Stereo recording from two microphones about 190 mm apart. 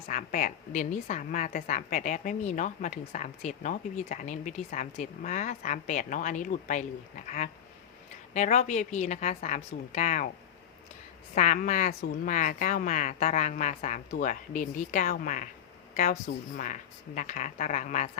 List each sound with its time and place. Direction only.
0.1 s a woman's voice: 45° left (ahead or behind)
11.3 s a woman's voice: 45° left (ahead or behind)
16.6 s a woman's voice: 45° left (ahead or behind)